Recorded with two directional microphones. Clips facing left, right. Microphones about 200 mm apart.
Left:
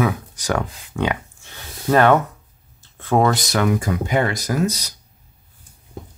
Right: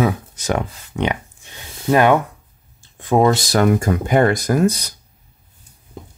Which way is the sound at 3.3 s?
30° right (ahead or behind).